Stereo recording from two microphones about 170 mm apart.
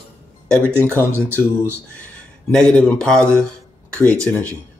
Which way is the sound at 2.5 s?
5° left (ahead or behind).